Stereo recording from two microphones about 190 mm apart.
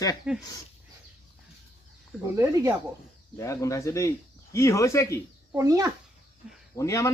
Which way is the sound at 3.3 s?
15° left (ahead or behind).